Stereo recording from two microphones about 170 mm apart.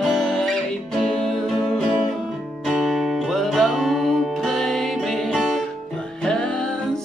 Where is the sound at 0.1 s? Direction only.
5° left (ahead or behind).